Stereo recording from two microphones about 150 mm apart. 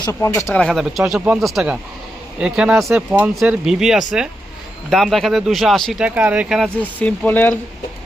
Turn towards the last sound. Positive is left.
turn(degrees=10)  # may be behind; listen again after turning